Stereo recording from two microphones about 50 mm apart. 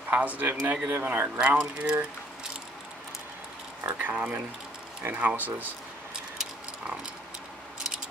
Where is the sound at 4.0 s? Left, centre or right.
Right.